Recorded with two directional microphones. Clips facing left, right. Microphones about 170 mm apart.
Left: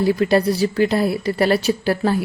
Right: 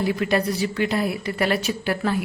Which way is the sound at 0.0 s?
35° left (ahead or behind).